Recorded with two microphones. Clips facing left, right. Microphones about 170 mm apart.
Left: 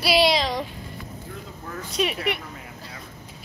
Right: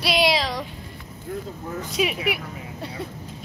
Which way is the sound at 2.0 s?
5° right (ahead or behind).